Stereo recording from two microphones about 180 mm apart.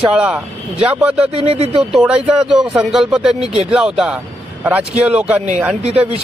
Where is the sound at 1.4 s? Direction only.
35° right (ahead or behind).